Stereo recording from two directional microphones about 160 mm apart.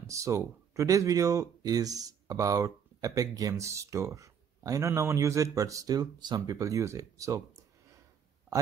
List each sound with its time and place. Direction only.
0.0 s speech: 20° right (ahead or behind)